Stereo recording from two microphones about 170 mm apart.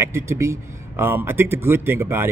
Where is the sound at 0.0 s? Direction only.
15° right (ahead or behind).